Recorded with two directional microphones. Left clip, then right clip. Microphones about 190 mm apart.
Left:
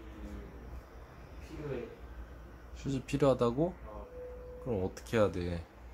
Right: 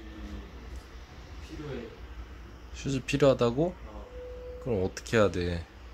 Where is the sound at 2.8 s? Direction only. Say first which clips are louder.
Right 6 dB; 10° right (ahead or behind).